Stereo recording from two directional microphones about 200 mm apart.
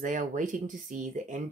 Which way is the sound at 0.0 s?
40° right (ahead or behind).